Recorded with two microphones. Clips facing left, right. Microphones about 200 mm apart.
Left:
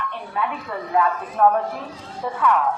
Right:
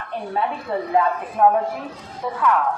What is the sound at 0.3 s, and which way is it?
Speech, 30° right (ahead or behind).